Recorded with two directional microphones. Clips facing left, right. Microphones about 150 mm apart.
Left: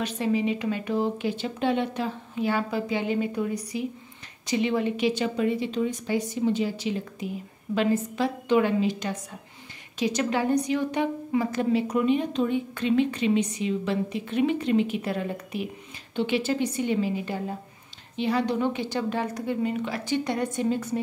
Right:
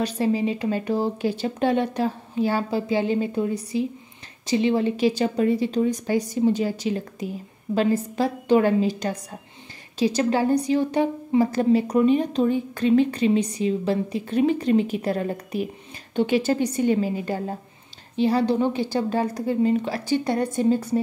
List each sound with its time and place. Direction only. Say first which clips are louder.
0.0 s a woman's voice: right 3 dB; 35° right (ahead or behind)